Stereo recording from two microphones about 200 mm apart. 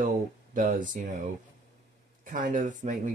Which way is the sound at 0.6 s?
40° right (ahead or behind).